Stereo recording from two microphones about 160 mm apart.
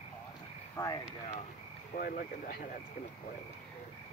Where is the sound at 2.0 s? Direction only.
60° left (ahead or behind).